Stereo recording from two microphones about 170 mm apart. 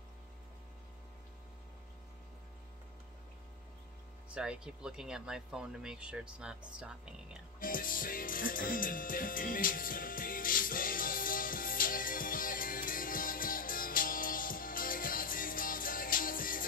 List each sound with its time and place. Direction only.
4.3 s speech: 5° right (ahead or behind)
7.6 s music: 55° left (ahead or behind)